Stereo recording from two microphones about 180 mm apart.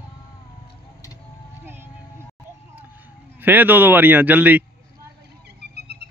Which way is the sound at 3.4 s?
10° right (ahead or behind).